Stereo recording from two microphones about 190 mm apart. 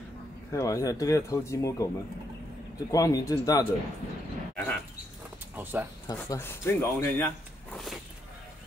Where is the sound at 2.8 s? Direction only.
15° left (ahead or behind).